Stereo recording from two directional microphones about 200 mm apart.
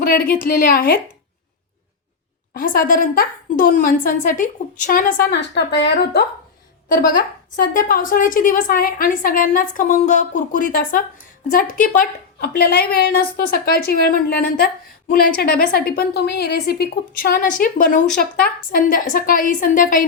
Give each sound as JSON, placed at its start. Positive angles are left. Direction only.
{"t": 0.0, "sound": "a woman's voice", "side_deg": 45}
{"t": 2.5, "sound": "a woman's voice", "side_deg": 45}
{"t": 6.8, "sound": "a woman's voice", "side_deg": 45}
{"t": 15.4, "sound": "a woman's voice", "side_deg": 50}